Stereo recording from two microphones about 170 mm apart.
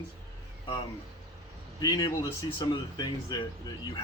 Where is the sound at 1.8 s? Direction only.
25° left (ahead or behind).